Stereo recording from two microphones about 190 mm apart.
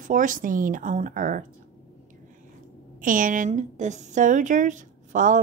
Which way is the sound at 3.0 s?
45° right (ahead or behind).